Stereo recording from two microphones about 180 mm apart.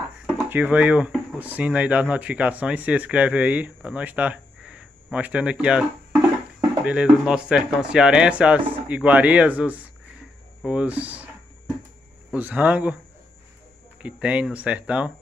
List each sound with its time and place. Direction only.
0.5 s speech: 10° right (ahead or behind)
12.3 s speech: 10° right (ahead or behind)
14.0 s speech: 5° right (ahead or behind)